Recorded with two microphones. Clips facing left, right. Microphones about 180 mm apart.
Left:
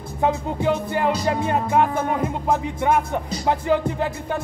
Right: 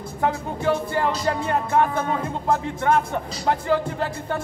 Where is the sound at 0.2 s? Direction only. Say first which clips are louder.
Left 2 dB; 20° left (ahead or behind).